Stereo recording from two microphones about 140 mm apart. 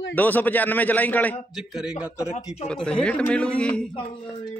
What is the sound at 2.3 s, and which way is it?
Speech, 50° left (ahead or behind).